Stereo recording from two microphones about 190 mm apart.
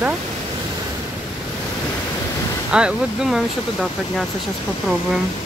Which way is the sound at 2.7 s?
5° right (ahead or behind).